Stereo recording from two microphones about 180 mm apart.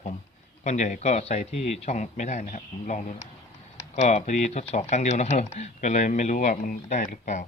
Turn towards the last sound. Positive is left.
turn(degrees=45)  # may be behind; listen again after turning